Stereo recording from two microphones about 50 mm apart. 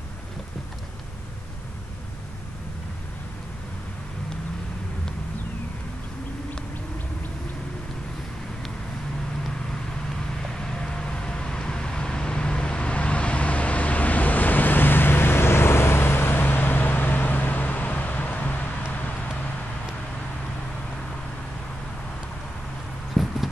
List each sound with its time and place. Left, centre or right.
10.5 s vehicle: centre; by 19.1 s left
23.1 s clip-clop: centre